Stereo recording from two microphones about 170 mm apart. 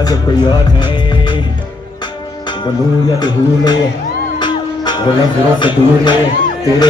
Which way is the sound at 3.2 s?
25° left (ahead or behind).